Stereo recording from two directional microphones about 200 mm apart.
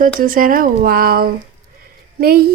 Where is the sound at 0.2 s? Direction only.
45° right (ahead or behind).